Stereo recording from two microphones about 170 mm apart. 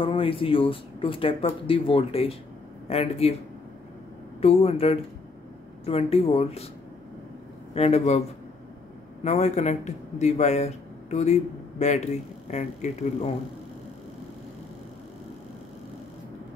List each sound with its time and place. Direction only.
0.0 s a man's voice: 30° left (ahead or behind)
4.4 s a man's voice: 35° left (ahead or behind)
7.7 s a man's voice: 40° left (ahead or behind)
9.2 s a man's voice: 40° left (ahead or behind)